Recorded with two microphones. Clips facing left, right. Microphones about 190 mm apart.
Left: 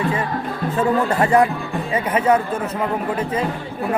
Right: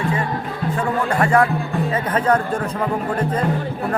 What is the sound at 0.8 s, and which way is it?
Speech, 20° left (ahead or behind).